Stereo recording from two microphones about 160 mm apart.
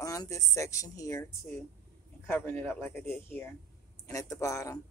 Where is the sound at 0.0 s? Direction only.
20° left (ahead or behind).